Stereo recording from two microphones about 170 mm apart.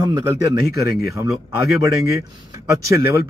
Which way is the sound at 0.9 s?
65° left (ahead or behind).